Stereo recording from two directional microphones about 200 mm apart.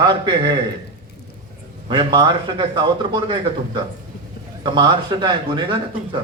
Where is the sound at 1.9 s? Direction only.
20° right (ahead or behind).